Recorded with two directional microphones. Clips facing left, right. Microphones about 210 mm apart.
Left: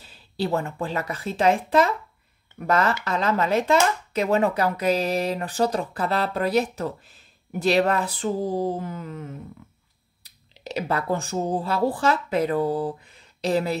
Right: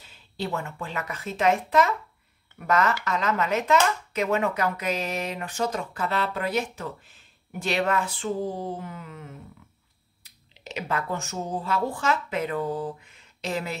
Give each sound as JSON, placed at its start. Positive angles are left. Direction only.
{"t": 0.0, "sound": "speech", "side_deg": 35}